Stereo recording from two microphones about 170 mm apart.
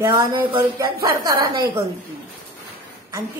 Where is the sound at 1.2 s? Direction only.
25° right (ahead or behind).